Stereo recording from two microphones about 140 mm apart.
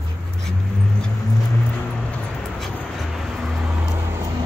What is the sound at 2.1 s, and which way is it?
Vehicle, 5° left (ahead or behind).